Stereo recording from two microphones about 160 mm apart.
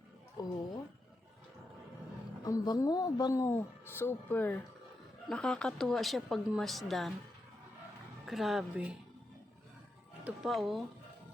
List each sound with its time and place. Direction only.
0.4 s a sound: 25° left (ahead or behind)
2.4 s a woman's voice: 20° left (ahead or behind); by 7.1 s centre (ahead or behind)
8.3 s speech: centre (ahead or behind)
10.2 s speech: centre (ahead or behind)